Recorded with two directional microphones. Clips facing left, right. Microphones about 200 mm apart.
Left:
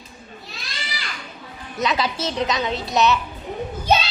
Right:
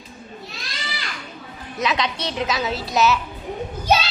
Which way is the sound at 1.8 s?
Centre (ahead or behind).